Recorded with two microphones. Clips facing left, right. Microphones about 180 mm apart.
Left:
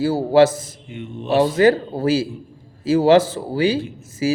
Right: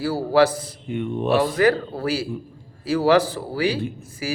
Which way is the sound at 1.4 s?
25° left (ahead or behind).